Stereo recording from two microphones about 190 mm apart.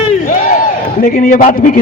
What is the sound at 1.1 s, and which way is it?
Speech, 45° left (ahead or behind).